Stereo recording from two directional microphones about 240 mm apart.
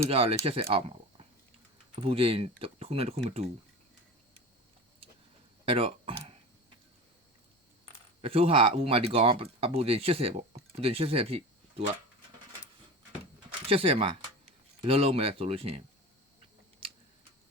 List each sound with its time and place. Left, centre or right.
0.1 s speech: right
5.6 s a sound: right
8.2 s speech: right
13.7 s speech: right